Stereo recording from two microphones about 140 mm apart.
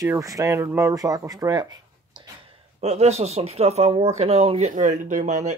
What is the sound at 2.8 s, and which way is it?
Speech, 50° right (ahead or behind).